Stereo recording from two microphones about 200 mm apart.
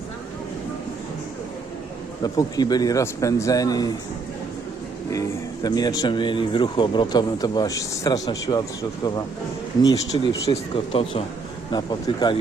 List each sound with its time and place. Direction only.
2.2 s speech: 20° left (ahead or behind)
5.6 s speech: 20° left (ahead or behind)
10.1 s speech: 20° left (ahead or behind)